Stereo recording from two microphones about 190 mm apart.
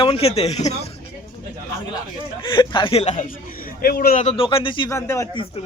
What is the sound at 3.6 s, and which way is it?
Speech, 55° left (ahead or behind).